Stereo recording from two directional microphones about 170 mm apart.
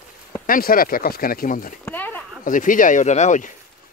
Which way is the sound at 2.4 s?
50° left (ahead or behind).